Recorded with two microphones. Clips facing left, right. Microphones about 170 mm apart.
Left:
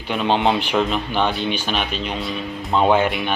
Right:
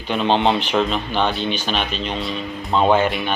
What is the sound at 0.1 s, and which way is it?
Speech, 10° left (ahead or behind).